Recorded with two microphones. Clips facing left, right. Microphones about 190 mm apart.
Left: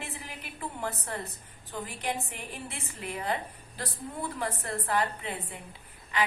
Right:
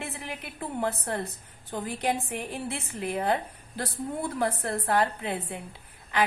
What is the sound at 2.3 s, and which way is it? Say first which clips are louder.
A woman's voice: right 8 dB; 60° right (ahead or behind).